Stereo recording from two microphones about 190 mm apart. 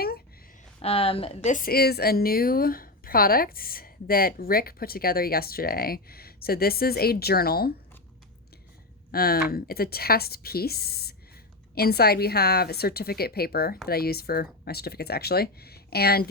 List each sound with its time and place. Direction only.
0.8 s speech: 30° left (ahead or behind)
1.5 s a woman's voice: 45° left (ahead or behind)
9.1 s a woman's voice: 55° left (ahead or behind)